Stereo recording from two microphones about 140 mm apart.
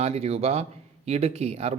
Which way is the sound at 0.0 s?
50° right (ahead or behind).